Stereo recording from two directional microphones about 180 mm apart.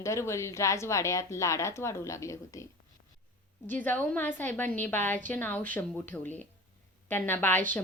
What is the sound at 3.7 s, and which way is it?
A woman's voice, 10° left (ahead or behind).